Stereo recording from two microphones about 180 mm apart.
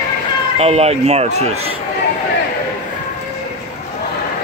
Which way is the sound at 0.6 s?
35° right (ahead or behind).